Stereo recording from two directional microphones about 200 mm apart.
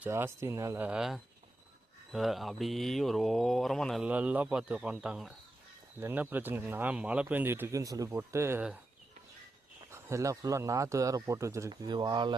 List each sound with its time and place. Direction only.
0.0 s speech: 10° right (ahead or behind)
9.9 s speech: 15° right (ahead or behind)